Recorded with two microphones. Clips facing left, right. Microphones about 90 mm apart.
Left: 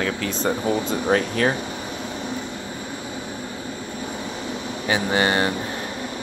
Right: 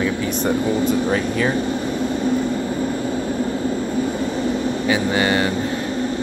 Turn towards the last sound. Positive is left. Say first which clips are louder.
# right 2 dB
turn(degrees=30)  # may be behind; listen again after turning